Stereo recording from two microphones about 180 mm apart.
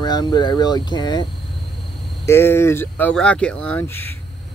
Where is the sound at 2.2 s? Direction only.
15° left (ahead or behind).